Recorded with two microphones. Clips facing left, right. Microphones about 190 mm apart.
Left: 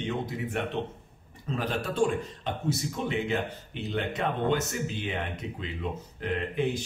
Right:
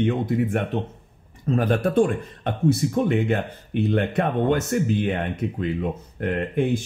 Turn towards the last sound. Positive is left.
turn(degrees=-55)  # may be behind; listen again after turning